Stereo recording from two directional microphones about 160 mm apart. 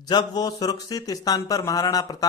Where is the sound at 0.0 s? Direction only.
25° left (ahead or behind).